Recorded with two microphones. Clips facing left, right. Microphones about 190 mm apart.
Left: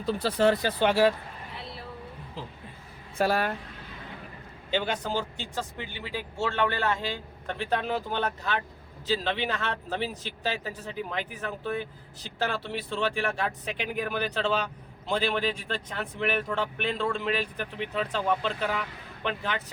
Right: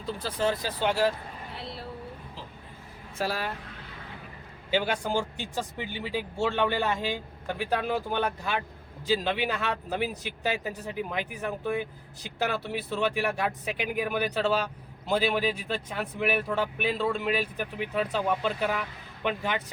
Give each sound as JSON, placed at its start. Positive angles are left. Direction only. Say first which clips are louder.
{"t": 0.0, "sound": "speech", "louder": "left 5 dB", "side_deg": 65}
{"t": 3.2, "sound": "speech", "louder": "left 5 dB", "side_deg": 55}
{"t": 4.7, "sound": "a man's voice", "louder": "right 2 dB", "side_deg": -10}